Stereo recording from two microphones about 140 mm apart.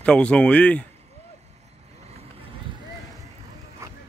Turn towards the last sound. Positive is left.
turn(degrees=-20)  # may be behind; listen again after turning